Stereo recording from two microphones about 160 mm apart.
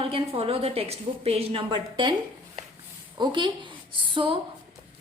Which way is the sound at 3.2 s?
30° right (ahead or behind).